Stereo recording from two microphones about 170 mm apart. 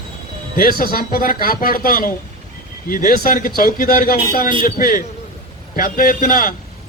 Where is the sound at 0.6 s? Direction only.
60° left (ahead or behind).